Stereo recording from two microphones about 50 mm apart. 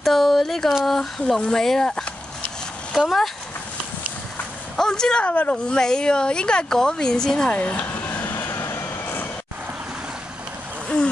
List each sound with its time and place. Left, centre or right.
0.0 s a sound: centre
1.4 s speech: centre
2.9 s speech: centre
4.7 s speech: centre
5.2 s speech: left
5.8 s speech: centre
7.4 s speech: left
8.1 s vehicle: left
8.4 s vehicle: left